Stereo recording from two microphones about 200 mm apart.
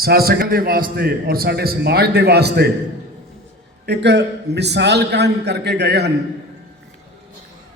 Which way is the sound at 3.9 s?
60° right (ahead or behind).